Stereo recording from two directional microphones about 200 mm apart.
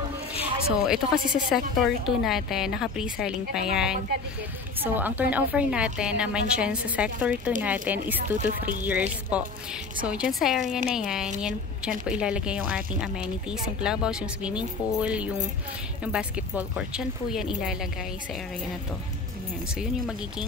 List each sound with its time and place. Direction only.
0.4 s a woman's voice: 5° right (ahead or behind)
8.4 s speech: 40° right (ahead or behind)
8.8 s a woman's voice: 5° right (ahead or behind)
19.7 s a woman's voice: 5° right (ahead or behind)